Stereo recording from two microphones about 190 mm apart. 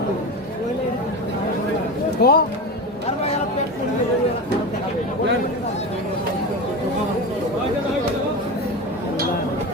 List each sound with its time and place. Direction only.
2.2 s speech: 55° left (ahead or behind)